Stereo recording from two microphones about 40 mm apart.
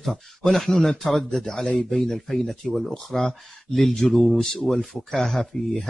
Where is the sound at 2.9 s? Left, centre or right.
Centre.